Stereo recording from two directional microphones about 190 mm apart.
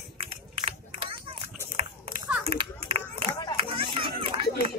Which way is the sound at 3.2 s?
25° right (ahead or behind).